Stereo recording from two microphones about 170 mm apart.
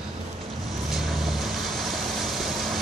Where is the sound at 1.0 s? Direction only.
Centre (ahead or behind).